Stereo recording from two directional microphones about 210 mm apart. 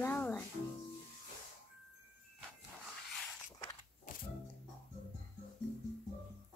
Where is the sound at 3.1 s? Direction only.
Centre (ahead or behind).